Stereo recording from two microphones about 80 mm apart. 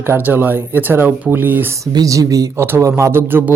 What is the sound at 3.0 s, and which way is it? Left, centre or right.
Speech, right.